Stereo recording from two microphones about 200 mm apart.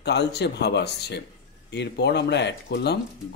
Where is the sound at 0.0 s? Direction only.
55° left (ahead or behind).